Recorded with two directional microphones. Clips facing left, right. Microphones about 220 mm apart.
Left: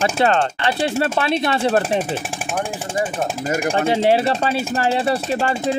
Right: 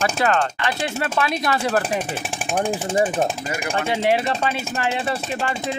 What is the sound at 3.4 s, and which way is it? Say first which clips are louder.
Speech: left 6 dB; 45° left (ahead or behind).